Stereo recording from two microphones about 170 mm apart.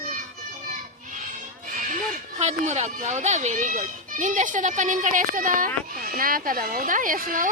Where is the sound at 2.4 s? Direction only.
40° right (ahead or behind).